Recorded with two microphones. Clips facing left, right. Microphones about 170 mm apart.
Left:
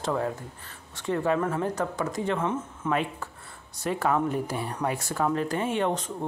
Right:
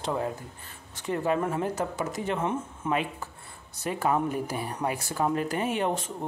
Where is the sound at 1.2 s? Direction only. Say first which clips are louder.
Left 1 dB; 20° right (ahead or behind).